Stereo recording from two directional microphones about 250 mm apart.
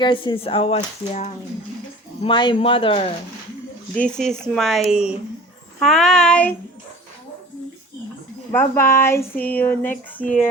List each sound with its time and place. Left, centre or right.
0.0 s speech: centre
4.3 s speech: centre
8.5 s speech: centre